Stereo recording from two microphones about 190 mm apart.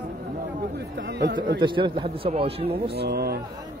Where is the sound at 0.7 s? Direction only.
65° right (ahead or behind).